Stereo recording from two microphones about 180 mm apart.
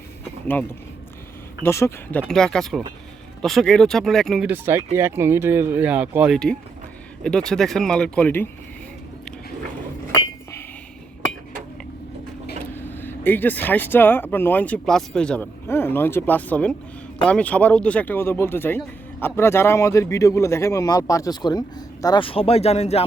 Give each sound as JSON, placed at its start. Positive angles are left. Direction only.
{"t": 1.6, "sound": "speech", "side_deg": 15}
{"t": 2.2, "sound": "speech", "side_deg": 5}
{"t": 4.4, "sound": "speech", "side_deg": -10}
{"t": 12.7, "sound": "a man's voice", "side_deg": 10}